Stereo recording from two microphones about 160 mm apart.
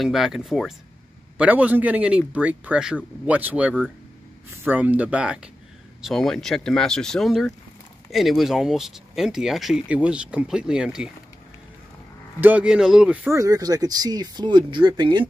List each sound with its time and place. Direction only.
0.0 s speech: centre (ahead or behind)
12.4 s speech: 10° right (ahead or behind)
13.4 s speech: 20° right (ahead or behind)